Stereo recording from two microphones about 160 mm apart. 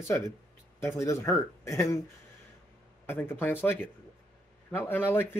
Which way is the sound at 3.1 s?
15° left (ahead or behind).